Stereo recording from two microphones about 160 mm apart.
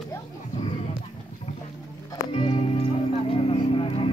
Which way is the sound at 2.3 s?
40° left (ahead or behind).